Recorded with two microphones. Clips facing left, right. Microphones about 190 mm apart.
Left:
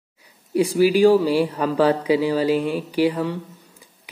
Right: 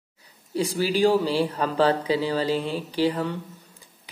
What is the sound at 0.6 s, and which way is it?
Speech, 10° left (ahead or behind).